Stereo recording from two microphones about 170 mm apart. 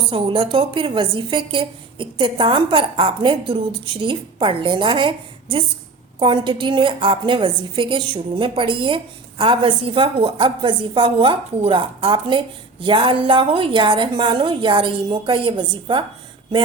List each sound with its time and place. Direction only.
0.1 s a woman's voice: 30° right (ahead or behind)